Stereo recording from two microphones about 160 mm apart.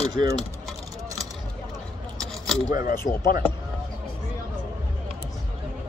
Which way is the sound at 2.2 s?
Centre (ahead or behind).